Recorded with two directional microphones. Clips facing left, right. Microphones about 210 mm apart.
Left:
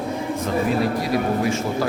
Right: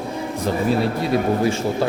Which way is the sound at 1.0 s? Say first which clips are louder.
Right 2 dB; 30° right (ahead or behind).